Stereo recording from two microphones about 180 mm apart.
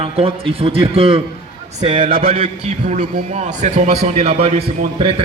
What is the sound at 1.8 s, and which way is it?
Speech, 45° right (ahead or behind).